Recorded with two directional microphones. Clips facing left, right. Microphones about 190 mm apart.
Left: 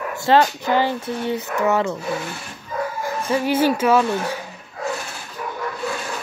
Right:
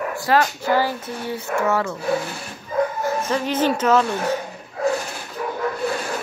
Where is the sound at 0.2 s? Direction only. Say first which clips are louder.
Left 4 dB; 25° left (ahead or behind).